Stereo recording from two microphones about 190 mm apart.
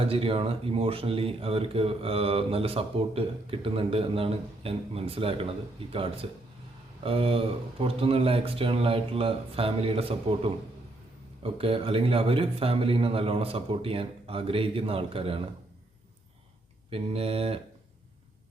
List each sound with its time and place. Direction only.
0.0 s a man's voice: 30° right (ahead or behind)
16.9 s speech: 30° right (ahead or behind)